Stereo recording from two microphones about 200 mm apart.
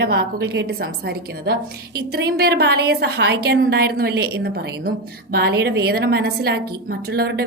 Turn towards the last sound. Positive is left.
turn(degrees=-55)  # may be behind; listen again after turning